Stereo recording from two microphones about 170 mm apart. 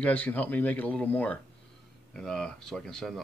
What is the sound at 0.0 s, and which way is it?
A man's voice, 10° left (ahead or behind).